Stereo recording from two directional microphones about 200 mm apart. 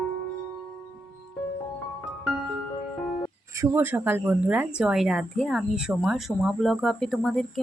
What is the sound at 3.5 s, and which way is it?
Speech, 15° right (ahead or behind).